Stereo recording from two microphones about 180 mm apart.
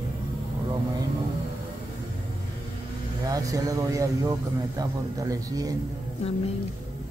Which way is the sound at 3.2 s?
20° right (ahead or behind).